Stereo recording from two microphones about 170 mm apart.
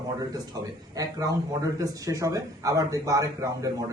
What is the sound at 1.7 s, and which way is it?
A man's voice, 20° right (ahead or behind).